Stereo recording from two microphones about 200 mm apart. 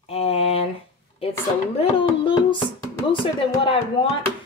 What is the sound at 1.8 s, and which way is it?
A woman's voice, 25° left (ahead or behind).